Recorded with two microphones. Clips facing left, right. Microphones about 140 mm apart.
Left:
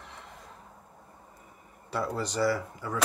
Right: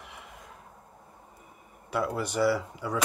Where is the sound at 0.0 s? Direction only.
10° right (ahead or behind).